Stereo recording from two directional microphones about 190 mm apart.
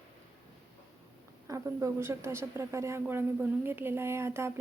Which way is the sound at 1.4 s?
15° right (ahead or behind).